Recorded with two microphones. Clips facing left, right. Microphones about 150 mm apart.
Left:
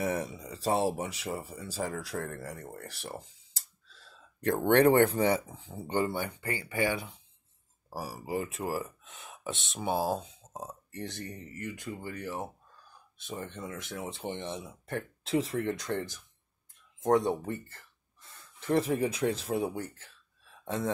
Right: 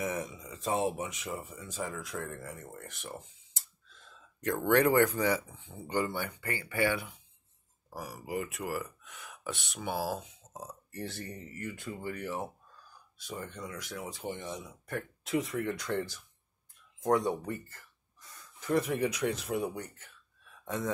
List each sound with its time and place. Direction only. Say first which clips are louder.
0.0 s speech: left 3 dB; 35° left (ahead or behind)
5.9 s speech: left 2 dB; 25° left (ahead or behind)
7.9 s speech: left 3 dB; 30° left (ahead or behind)
11.9 s speech: right 2 dB; 20° right (ahead or behind)
13.2 s speech: left 2 dB; 25° left (ahead or behind)